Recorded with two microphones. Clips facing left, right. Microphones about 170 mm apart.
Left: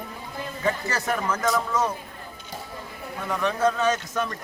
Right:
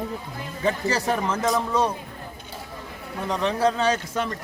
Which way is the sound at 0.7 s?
30° right (ahead or behind).